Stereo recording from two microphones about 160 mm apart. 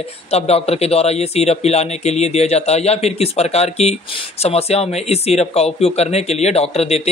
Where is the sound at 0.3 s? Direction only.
40° left (ahead or behind).